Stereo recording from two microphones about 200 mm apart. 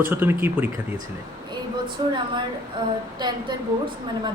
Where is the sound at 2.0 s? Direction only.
20° right (ahead or behind).